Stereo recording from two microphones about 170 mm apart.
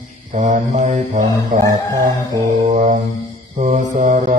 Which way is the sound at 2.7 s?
45° right (ahead or behind).